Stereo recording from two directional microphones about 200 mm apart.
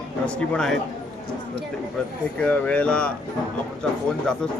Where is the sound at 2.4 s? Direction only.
5° left (ahead or behind).